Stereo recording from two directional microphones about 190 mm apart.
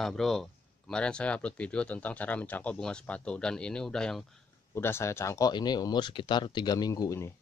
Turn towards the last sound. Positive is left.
turn(degrees=15)  # may be behind; listen again after turning